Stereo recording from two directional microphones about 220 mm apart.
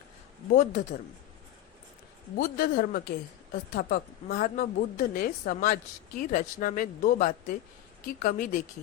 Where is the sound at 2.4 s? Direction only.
40° left (ahead or behind).